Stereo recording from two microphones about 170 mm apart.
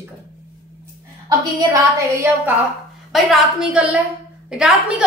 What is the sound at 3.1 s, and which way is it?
A woman's voice, 5° right (ahead or behind).